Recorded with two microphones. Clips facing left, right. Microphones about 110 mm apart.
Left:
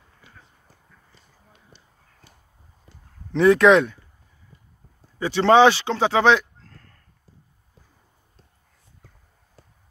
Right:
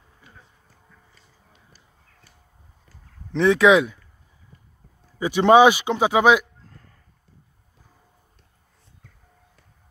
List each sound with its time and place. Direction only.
1.7 s horse: 25° left (ahead or behind)
3.3 s speech: centre (ahead or behind)
5.2 s speech: 15° right (ahead or behind)